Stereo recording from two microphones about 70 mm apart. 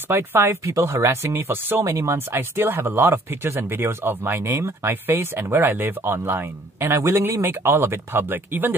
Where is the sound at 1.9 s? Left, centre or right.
Right.